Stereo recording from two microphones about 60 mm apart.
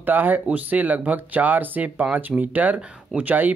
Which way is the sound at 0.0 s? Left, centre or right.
Right.